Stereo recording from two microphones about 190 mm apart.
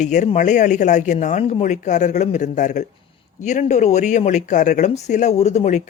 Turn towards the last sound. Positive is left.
turn(degrees=40)  # may be behind; listen again after turning